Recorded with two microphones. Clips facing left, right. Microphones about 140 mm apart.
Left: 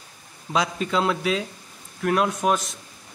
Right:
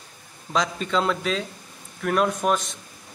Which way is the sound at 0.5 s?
10° left (ahead or behind).